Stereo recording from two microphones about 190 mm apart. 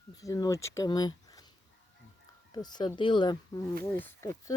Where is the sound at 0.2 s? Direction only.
20° left (ahead or behind).